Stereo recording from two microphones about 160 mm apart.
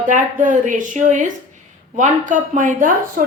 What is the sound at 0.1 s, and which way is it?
A woman's voice, 55° right (ahead or behind).